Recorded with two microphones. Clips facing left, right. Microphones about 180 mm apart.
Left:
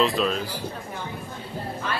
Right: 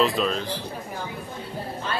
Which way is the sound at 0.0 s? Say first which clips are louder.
Even; centre (ahead or behind).